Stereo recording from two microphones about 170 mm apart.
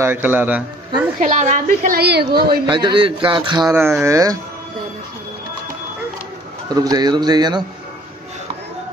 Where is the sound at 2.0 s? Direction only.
75° right (ahead or behind).